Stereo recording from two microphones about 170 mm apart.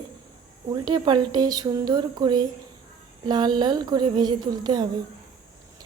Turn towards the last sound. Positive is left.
turn(degrees=-25)  # may be behind; listen again after turning